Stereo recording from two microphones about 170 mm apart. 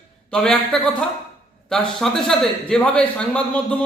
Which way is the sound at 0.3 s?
5° left (ahead or behind).